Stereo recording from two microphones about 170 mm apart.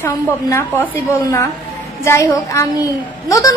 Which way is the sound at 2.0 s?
15° left (ahead or behind).